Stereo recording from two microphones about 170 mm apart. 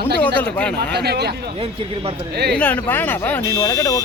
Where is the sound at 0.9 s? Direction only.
70° right (ahead or behind).